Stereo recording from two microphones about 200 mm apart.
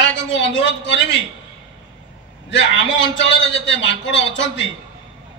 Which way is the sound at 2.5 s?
65° left (ahead or behind).